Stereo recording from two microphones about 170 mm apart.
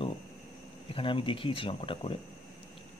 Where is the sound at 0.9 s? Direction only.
30° left (ahead or behind).